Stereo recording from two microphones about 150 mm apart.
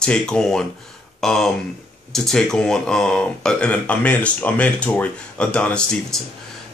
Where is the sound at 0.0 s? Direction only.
5° left (ahead or behind).